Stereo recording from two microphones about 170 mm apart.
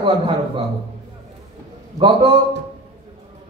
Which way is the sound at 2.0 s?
30° right (ahead or behind).